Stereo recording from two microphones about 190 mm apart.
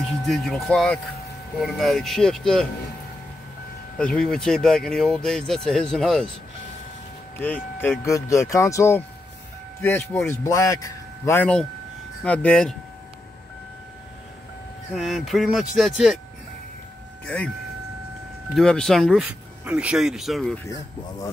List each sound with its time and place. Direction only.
0.1 s speech: centre (ahead or behind)
4.0 s speech: 5° left (ahead or behind)
7.3 s speech: 10° left (ahead or behind)
15.0 s speech: centre (ahead or behind)
18.5 s speech: 5° left (ahead or behind)